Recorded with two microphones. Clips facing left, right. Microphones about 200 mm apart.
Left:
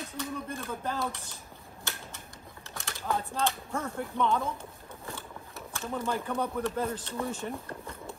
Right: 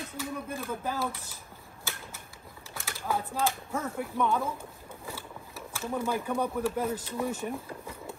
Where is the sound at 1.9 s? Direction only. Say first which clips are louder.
Even; centre (ahead or behind).